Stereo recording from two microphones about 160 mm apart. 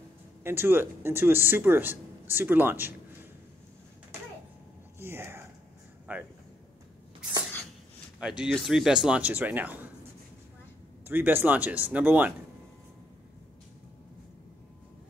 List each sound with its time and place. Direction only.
0.4 s speech: 15° right (ahead or behind)
4.9 s a sound: 15° right (ahead or behind)
6.1 s speech: 10° right (ahead or behind)
8.2 s speech: 5° right (ahead or behind)
11.1 s speech: 10° right (ahead or behind)